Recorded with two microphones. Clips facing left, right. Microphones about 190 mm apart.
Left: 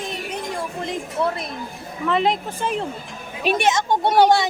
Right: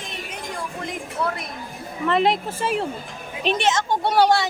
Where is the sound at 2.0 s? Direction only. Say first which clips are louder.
Right 1 dB; centre (ahead or behind).